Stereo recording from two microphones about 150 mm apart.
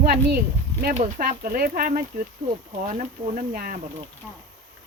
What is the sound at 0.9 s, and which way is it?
Speech, 60° right (ahead or behind).